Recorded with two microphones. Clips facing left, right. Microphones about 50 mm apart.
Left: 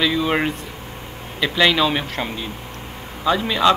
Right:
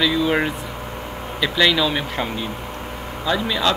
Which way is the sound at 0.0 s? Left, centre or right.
Centre.